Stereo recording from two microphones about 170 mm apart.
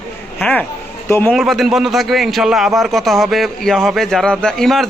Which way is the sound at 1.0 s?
15° left (ahead or behind).